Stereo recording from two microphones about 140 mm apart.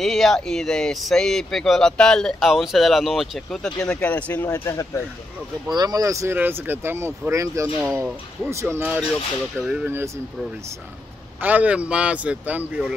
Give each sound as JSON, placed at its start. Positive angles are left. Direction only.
{"t": 0.0, "sound": "speech", "side_deg": 0}
{"t": 4.5, "sound": "speech", "side_deg": 25}
{"t": 5.7, "sound": "speech", "side_deg": -30}
{"t": 11.4, "sound": "speech", "side_deg": -10}